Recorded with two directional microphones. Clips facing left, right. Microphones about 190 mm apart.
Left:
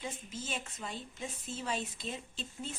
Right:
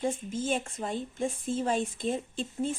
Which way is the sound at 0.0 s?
50° right (ahead or behind).